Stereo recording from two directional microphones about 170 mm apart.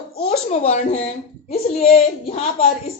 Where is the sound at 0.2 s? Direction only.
40° left (ahead or behind).